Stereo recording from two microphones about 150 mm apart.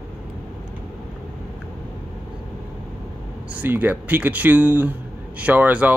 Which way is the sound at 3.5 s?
10° right (ahead or behind).